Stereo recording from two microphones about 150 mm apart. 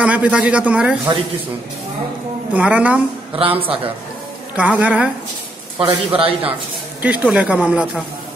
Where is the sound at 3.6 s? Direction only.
40° right (ahead or behind).